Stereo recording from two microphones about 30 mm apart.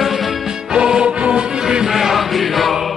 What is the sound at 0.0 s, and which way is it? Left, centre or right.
Music, centre.